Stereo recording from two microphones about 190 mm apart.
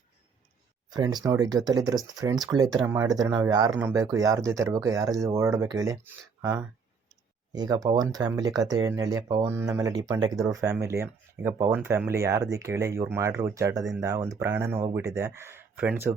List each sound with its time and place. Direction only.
0.9 s speech: 20° right (ahead or behind)